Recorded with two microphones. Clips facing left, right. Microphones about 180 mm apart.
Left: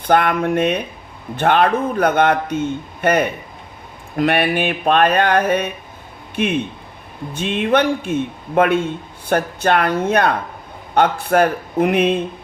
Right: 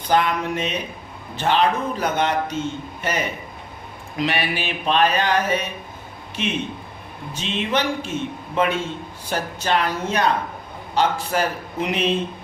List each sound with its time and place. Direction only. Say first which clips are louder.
0.1 s a man's voice: left 5 dB; 55° left (ahead or behind)